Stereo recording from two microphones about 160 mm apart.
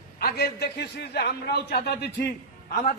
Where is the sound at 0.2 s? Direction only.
75° left (ahead or behind).